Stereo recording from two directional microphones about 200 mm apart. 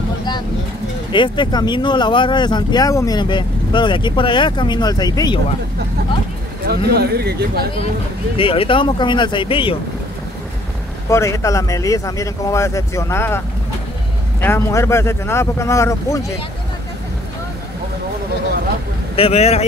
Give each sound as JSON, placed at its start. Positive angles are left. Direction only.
{"t": 1.1, "sound": "speech", "side_deg": 25}
{"t": 6.7, "sound": "speech", "side_deg": -50}
{"t": 8.4, "sound": "speech", "side_deg": 25}
{"t": 11.1, "sound": "speech", "side_deg": 15}
{"t": 14.4, "sound": "speech", "side_deg": 15}
{"t": 19.1, "sound": "speech", "side_deg": 30}